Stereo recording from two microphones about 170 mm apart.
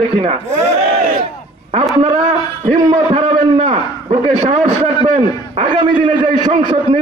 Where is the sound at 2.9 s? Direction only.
40° right (ahead or behind).